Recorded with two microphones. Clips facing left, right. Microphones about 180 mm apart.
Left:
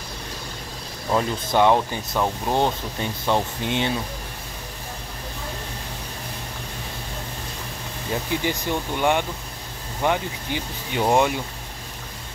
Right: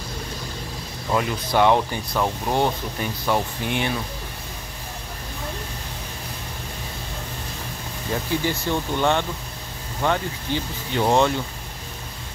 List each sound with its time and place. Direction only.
1.1 s speech: 20° left (ahead or behind)
8.3 s speech: 15° left (ahead or behind)